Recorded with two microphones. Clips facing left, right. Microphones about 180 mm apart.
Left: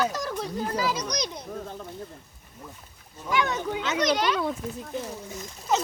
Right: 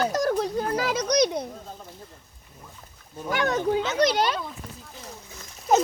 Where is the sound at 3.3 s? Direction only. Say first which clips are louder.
Right 3 dB; 50° right (ahead or behind); by 4.4 s 30° right (ahead or behind).